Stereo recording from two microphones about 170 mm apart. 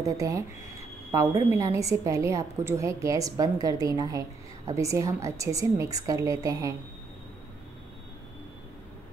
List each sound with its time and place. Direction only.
0.0 s a woman's voice: 20° right (ahead or behind)
1.5 s a woman's voice: 20° right (ahead or behind)